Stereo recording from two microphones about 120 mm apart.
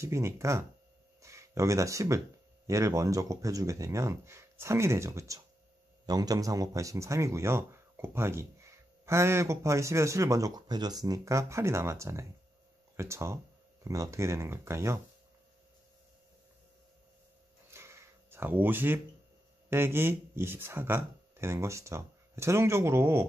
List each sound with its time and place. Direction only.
0.0 s speech: 25° right (ahead or behind)
17.6 s a sound: 20° right (ahead or behind)
19.7 s speech: 20° right (ahead or behind)